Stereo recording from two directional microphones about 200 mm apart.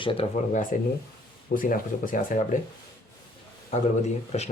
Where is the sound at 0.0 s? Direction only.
25° left (ahead or behind).